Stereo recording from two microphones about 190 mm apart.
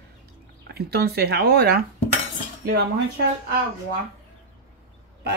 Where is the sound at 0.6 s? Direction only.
55° right (ahead or behind).